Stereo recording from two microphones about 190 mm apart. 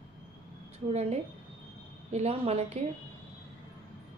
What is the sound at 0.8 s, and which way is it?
A woman's voice, 35° right (ahead or behind).